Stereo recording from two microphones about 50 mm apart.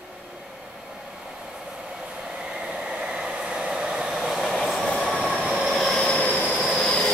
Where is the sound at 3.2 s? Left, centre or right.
Centre.